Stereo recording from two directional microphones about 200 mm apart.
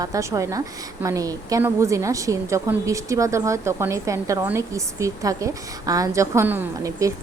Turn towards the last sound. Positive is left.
turn(degrees=-15)  # may be behind; listen again after turning